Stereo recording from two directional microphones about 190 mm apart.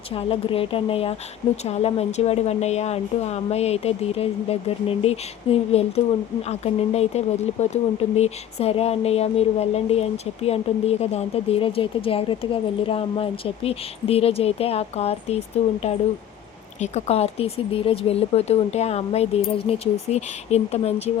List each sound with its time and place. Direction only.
0.1 s a woman's voice: 30° left (ahead or behind)